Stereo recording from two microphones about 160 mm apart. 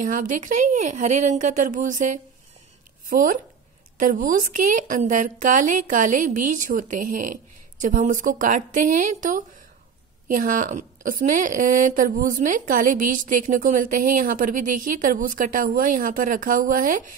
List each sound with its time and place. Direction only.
0.0 s a woman's voice: 55° right (ahead or behind)